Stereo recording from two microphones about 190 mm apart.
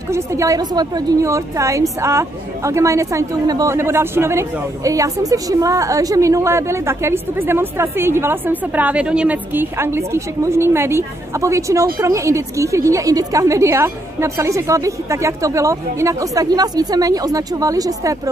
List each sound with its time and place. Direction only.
0.1 s a woman's voice: 15° right (ahead or behind)